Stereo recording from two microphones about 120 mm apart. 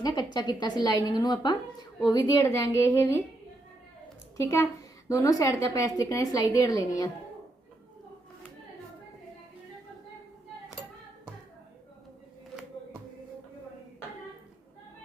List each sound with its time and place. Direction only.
0.0 s a woman's voice: 35° left (ahead or behind)
4.4 s a woman's voice: 25° left (ahead or behind)